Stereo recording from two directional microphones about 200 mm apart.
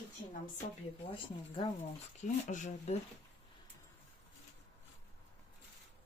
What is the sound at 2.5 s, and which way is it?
Speech, 35° left (ahead or behind).